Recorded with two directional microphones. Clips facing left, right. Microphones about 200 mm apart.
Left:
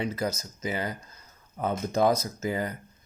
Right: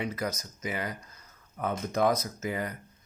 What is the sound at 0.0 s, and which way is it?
Speech, 25° left (ahead or behind).